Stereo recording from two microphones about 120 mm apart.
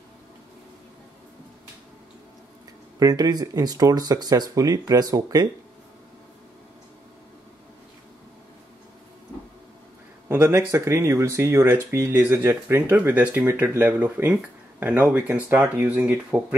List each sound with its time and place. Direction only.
3.0 s speech: 30° right (ahead or behind)
10.2 s speech: 20° right (ahead or behind)